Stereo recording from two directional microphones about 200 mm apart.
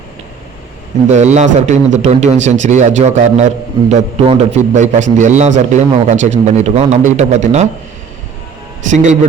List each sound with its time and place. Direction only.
1.0 s a man's voice: 35° right (ahead or behind)
8.9 s a man's voice: 40° right (ahead or behind)